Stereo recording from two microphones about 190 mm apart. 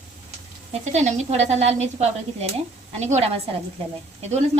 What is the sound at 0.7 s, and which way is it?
Speech, 35° right (ahead or behind).